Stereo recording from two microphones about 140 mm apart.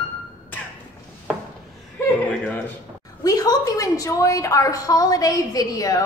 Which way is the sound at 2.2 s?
10° left (ahead or behind).